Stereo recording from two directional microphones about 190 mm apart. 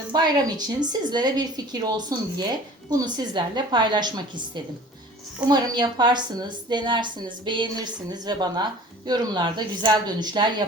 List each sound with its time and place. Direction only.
0.1 s speech: 20° right (ahead or behind)